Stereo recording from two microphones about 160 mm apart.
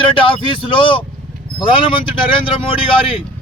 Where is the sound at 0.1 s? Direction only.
35° left (ahead or behind).